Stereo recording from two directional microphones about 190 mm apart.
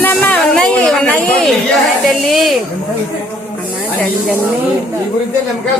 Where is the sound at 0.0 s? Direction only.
10° left (ahead or behind).